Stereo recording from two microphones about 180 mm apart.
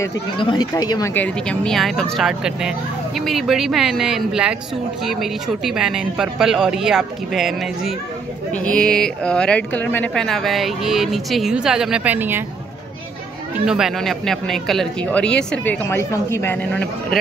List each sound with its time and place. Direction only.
0.4 s speech: 25° left (ahead or behind)
1.1 s speech: 5° left (ahead or behind); by 12.4 s 10° right (ahead or behind)
13.7 s speech: centre (ahead or behind)